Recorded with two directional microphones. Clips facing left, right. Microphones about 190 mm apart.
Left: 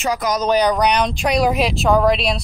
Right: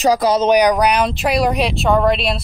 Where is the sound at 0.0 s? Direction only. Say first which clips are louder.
Right 6 dB; 35° right (ahead or behind).